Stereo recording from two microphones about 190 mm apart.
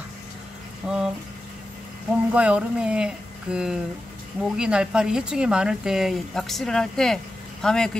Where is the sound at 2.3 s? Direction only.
5° right (ahead or behind).